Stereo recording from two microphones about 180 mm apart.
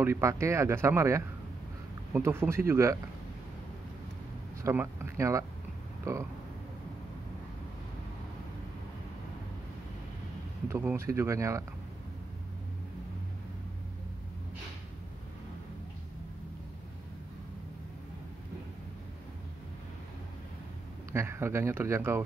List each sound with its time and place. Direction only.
0.0 s speech: 15° right (ahead or behind)
4.6 s speech: 15° right (ahead or behind)
10.7 s speech: 10° right (ahead or behind)
21.1 s speech: 15° right (ahead or behind)